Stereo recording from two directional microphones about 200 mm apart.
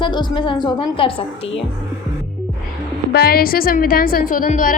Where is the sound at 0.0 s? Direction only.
25° left (ahead or behind).